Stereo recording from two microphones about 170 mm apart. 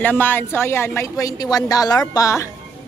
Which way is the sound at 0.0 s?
10° left (ahead or behind).